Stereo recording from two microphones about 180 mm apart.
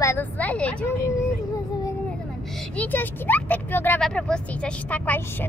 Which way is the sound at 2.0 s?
5° left (ahead or behind).